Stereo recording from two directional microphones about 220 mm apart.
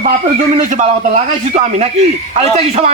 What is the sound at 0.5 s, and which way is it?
A man's voice, 35° right (ahead or behind).